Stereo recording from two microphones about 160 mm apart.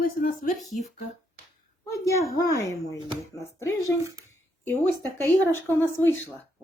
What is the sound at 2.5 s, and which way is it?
Speech, 20° left (ahead or behind).